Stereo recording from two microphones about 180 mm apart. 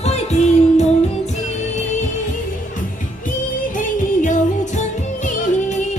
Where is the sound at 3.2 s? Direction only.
45° left (ahead or behind).